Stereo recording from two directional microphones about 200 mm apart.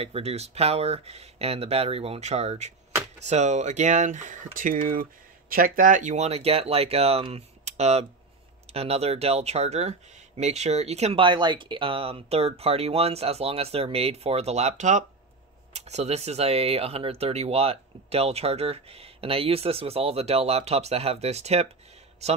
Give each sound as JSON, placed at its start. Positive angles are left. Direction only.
{"t": 0.0, "sound": "speech", "side_deg": -30}